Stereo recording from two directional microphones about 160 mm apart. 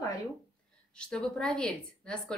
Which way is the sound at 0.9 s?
5° left (ahead or behind).